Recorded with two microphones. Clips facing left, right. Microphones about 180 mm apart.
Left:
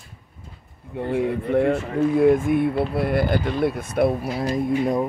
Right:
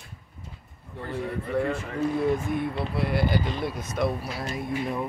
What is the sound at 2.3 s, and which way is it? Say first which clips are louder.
Speech: left 8 dB; 50° left (ahead or behind).